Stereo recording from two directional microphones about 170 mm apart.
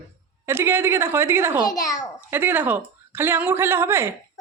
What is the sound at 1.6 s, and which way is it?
Speech, 20° left (ahead or behind).